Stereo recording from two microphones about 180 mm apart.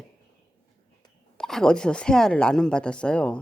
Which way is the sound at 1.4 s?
5° left (ahead or behind).